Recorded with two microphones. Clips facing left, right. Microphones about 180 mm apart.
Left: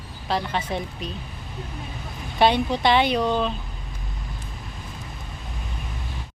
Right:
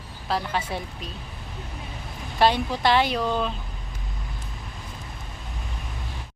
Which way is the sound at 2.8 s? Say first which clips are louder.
Left 1 dB; centre (ahead or behind).